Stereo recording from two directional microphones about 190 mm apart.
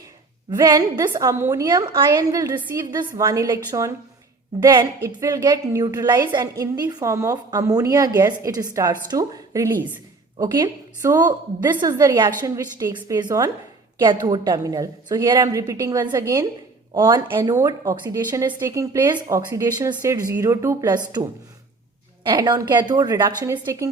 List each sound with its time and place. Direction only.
0.5 s a woman's voice: 20° right (ahead or behind)
22.3 s a woman's voice: 20° right (ahead or behind)